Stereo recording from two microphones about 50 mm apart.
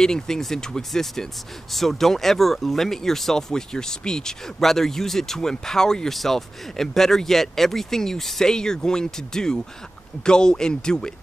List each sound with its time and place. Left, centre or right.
0.0 s speech: centre